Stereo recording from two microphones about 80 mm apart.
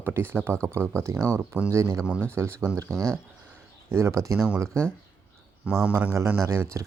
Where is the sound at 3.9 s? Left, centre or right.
Right.